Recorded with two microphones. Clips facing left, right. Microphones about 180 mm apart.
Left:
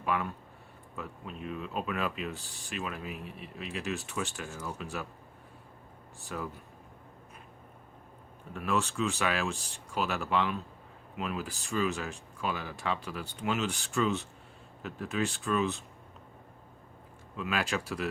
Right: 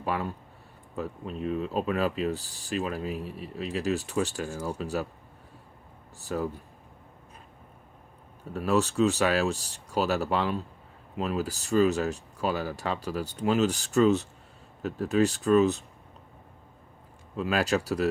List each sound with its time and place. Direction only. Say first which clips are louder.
0.0 s speech: right 2 dB; 35° right (ahead or behind)
6.1 s speech: right 8 dB; 35° right (ahead or behind)
8.5 s speech: right 7 dB; 35° right (ahead or behind)
17.3 s speech: right 6 dB; 40° right (ahead or behind)